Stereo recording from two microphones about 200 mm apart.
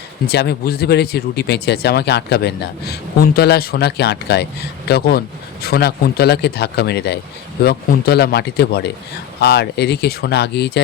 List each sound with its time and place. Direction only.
0.3 s speech: 55° left (ahead or behind)